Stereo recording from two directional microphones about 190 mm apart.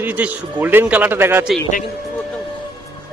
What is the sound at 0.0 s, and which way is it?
A man's voice, 10° right (ahead or behind).